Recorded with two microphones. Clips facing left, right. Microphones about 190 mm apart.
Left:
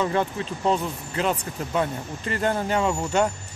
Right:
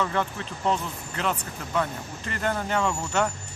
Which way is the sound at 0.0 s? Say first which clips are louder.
Left 3 dB; 20° left (ahead or behind).